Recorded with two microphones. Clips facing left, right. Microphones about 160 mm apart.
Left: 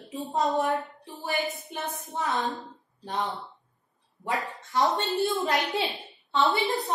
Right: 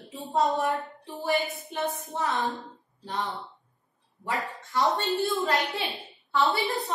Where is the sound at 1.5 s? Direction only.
Centre (ahead or behind).